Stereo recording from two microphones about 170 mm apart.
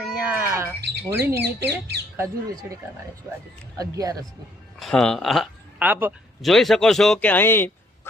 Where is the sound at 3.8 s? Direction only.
20° right (ahead or behind).